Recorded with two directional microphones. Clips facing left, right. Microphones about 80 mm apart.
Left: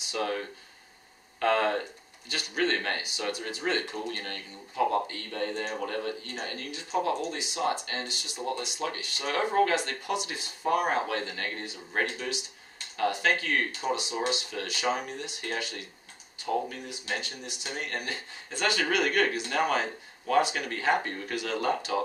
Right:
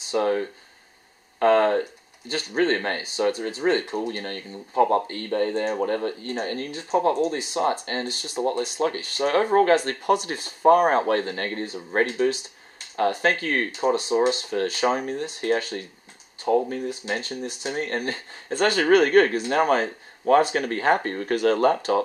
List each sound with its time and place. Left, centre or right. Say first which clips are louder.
0.1 s speech: right 8 dB; right